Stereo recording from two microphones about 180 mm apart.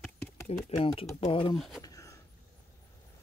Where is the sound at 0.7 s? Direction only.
30° left (ahead or behind).